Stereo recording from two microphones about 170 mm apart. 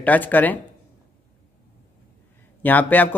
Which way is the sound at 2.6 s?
10° left (ahead or behind).